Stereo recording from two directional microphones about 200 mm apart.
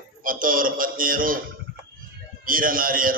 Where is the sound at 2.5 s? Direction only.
45° right (ahead or behind).